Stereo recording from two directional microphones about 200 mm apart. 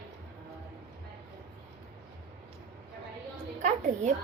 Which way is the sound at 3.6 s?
35° right (ahead or behind).